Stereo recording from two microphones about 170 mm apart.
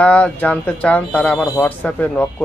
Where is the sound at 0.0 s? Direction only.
10° left (ahead or behind).